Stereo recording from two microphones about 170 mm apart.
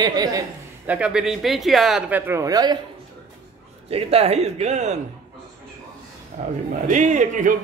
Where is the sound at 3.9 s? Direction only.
35° right (ahead or behind).